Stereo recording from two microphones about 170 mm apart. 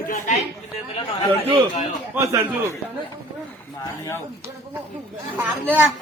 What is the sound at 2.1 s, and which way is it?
Speech, 20° right (ahead or behind).